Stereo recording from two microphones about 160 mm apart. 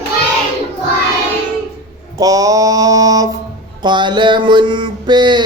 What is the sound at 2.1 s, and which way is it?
Mantra, 20° right (ahead or behind).